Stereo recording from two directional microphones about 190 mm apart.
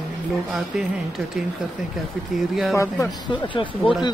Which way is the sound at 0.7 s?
Centre (ahead or behind).